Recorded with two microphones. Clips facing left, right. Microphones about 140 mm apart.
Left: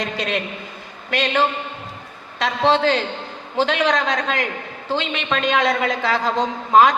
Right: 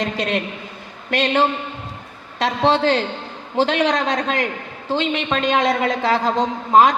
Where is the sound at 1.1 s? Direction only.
30° right (ahead or behind).